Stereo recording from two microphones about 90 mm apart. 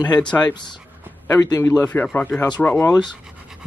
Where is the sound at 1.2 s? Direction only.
40° left (ahead or behind).